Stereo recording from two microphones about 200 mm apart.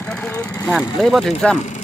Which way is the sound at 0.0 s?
5° left (ahead or behind).